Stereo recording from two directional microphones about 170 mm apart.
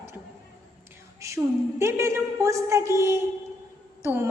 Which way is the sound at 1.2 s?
20° right (ahead or behind).